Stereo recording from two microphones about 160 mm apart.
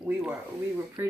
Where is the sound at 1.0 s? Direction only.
15° right (ahead or behind).